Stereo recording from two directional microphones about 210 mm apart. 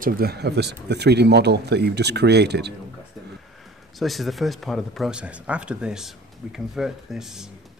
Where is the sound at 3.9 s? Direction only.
Centre (ahead or behind).